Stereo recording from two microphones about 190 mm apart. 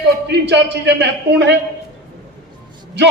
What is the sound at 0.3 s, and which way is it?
A man's voice, 65° right (ahead or behind).